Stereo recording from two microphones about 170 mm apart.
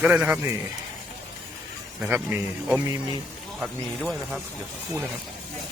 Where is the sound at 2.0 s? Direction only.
10° right (ahead or behind).